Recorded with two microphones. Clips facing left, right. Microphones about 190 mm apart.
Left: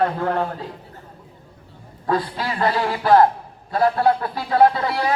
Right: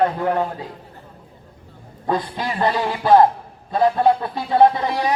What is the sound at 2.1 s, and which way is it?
Music, 20° right (ahead or behind).